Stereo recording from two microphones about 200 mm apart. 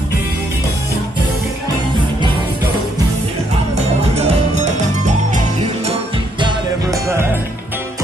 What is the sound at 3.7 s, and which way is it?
Music, 30° right (ahead or behind).